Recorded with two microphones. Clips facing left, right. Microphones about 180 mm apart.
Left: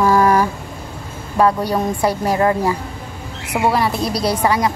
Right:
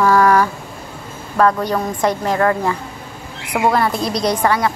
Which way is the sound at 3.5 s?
5° left (ahead or behind).